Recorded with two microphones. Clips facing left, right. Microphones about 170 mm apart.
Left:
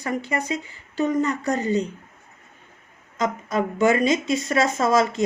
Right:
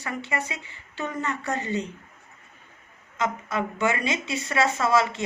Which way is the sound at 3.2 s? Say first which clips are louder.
Left 4 dB; 40° left (ahead or behind).